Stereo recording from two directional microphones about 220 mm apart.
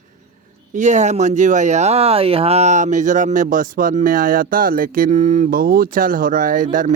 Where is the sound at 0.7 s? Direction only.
35° right (ahead or behind).